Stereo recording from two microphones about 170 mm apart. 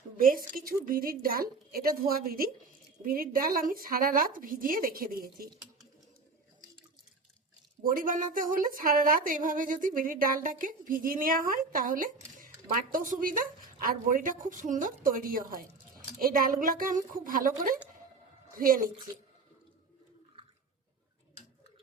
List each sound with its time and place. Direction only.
0.2 s a woman's voice: 55° right (ahead or behind)
7.8 s a woman's voice: 55° right (ahead or behind)